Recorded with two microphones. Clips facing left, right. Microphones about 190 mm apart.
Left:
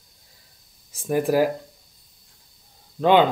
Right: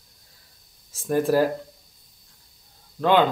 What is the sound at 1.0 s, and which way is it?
Speech, 15° left (ahead or behind).